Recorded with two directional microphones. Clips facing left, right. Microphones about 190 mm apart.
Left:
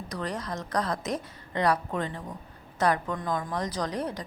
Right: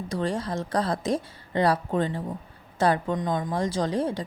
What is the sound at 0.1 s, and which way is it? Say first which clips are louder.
A woman's voice: right 5 dB; 30° right (ahead or behind).